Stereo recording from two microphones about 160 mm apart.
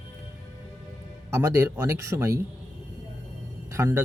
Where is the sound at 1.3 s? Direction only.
20° right (ahead or behind).